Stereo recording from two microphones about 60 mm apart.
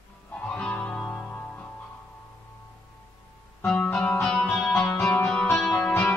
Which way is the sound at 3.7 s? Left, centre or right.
Left.